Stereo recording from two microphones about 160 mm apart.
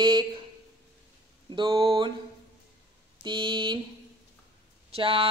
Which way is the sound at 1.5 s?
30° right (ahead or behind).